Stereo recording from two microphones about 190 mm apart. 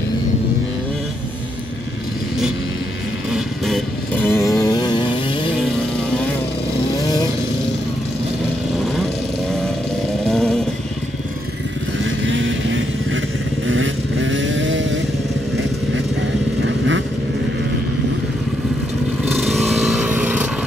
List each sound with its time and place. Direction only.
3.3 s motorcycle: centre (ahead or behind); by 5.5 s 25° left (ahead or behind)
10.2 s motorcycle: centre (ahead or behind)
12.0 s vehicle: 85° right
16.6 s vehicle: 75° right (ahead or behind)
19.3 s vehicle: centre (ahead or behind)